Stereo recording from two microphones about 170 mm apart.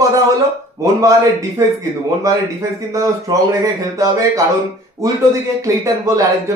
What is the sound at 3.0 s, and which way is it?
Speech, 20° right (ahead or behind).